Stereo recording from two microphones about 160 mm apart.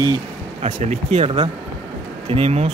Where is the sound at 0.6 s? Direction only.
40° right (ahead or behind).